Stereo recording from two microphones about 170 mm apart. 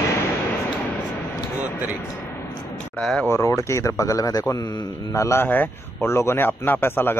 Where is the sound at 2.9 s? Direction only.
5° left (ahead or behind).